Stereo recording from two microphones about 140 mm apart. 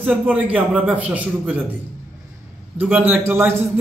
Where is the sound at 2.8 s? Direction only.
15° right (ahead or behind).